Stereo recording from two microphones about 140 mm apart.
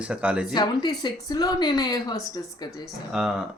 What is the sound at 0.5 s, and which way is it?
Speech, 30° left (ahead or behind).